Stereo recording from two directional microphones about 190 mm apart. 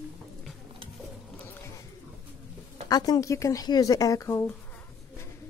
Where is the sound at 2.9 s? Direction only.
20° left (ahead or behind).